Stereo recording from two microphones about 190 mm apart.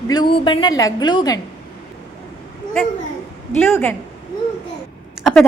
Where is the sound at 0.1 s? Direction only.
25° left (ahead or behind).